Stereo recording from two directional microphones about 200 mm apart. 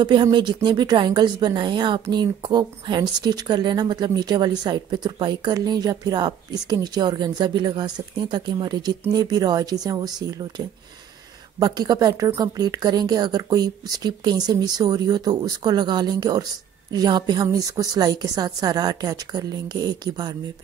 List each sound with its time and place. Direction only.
0.0 s a woman's voice: 20° right (ahead or behind)
11.6 s a woman's voice: 20° right (ahead or behind)